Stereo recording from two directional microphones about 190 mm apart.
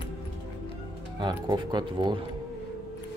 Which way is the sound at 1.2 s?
25° right (ahead or behind).